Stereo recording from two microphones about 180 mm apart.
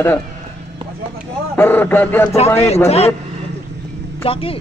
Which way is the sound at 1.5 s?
10° left (ahead or behind).